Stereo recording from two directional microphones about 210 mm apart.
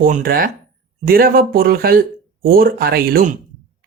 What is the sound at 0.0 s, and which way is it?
Speech, 45° right (ahead or behind).